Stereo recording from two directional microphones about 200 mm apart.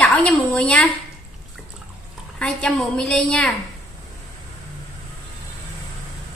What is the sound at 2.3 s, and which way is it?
A woman's voice, 5° left (ahead or behind).